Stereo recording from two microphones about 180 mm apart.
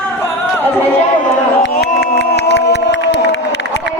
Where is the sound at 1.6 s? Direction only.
70° left (ahead or behind).